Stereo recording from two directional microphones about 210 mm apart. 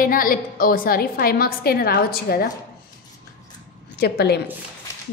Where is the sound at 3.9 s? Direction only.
50° left (ahead or behind).